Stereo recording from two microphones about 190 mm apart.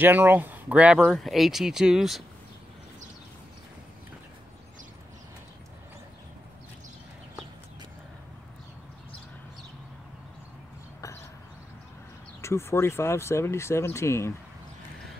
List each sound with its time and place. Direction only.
0.0 s speech: 10° right (ahead or behind)
12.4 s speech: 15° left (ahead or behind)